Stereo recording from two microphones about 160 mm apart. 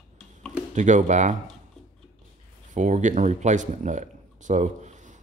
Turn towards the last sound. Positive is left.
turn(degrees=-50)  # may be behind; listen again after turning